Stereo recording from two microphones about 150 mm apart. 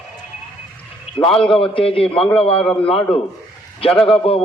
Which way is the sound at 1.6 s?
40° left (ahead or behind).